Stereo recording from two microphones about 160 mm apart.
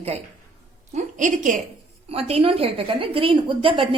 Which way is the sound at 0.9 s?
50° right (ahead or behind).